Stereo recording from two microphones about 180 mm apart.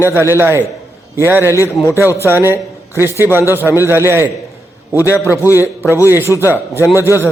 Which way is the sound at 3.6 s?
15° left (ahead or behind).